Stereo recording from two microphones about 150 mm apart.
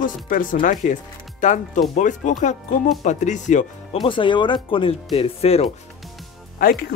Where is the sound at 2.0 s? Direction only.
55° left (ahead or behind).